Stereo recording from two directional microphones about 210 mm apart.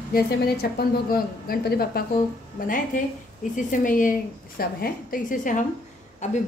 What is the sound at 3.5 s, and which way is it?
A woman's voice, 40° left (ahead or behind).